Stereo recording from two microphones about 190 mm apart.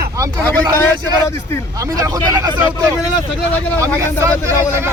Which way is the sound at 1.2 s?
15° left (ahead or behind).